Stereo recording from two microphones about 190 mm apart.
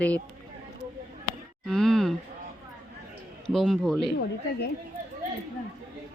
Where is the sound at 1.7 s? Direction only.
5° left (ahead or behind).